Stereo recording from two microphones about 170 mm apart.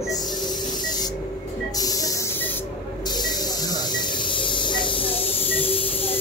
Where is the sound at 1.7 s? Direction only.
20° left (ahead or behind).